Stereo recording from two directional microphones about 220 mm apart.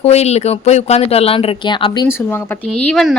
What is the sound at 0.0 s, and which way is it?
Speech, 30° left (ahead or behind).